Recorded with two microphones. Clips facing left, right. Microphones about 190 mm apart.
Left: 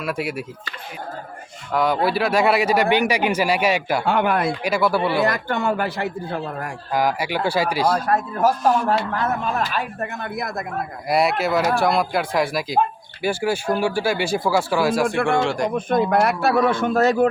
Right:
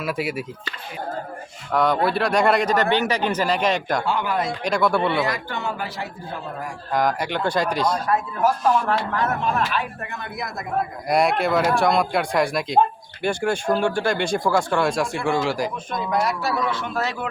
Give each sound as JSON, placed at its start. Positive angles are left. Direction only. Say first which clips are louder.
{"t": 0.0, "sound": "speech", "louder": "even", "side_deg": 0}
{"t": 1.7, "sound": "a man's voice", "louder": "even", "side_deg": 0}
{"t": 4.0, "sound": "speech", "louder": "left 4 dB", "side_deg": 60}
{"t": 4.6, "sound": "speech", "louder": "right 3 dB", "side_deg": 5}
{"t": 5.2, "sound": "speech", "louder": "left 5 dB", "side_deg": 50}
{"t": 6.9, "sound": "a man's voice", "louder": "left 1 dB", "side_deg": 5}
{"t": 7.9, "sound": "speech", "louder": "left 2 dB", "side_deg": 45}
{"t": 11.1, "sound": "speech", "louder": "even", "side_deg": 5}
{"t": 15.7, "sound": "speech", "louder": "left 6 dB", "side_deg": 55}